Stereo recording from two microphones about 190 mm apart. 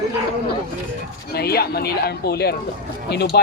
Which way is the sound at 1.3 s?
55° left (ahead or behind).